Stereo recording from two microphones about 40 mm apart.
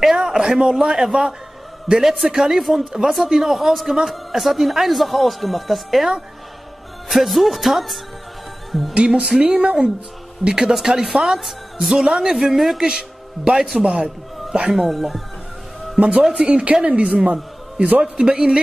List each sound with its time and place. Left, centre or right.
0.0 s a sound: centre
0.6 s a man's voice: centre
7.1 s a man's voice: centre
8.9 s a woman's voice: right; by 12.7 s centre
12.7 s a man's voice: centre
16.0 s a woman's voice: right
16.8 s a man's voice: right
18.2 s a woman's voice: centre